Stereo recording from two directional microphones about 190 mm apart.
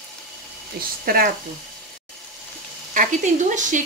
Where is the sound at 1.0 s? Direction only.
50° right (ahead or behind).